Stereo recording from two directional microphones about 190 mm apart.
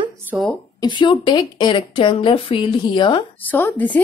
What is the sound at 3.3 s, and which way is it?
Speech, 10° left (ahead or behind).